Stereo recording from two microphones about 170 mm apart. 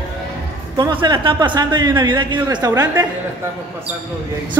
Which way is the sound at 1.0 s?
25° right (ahead or behind).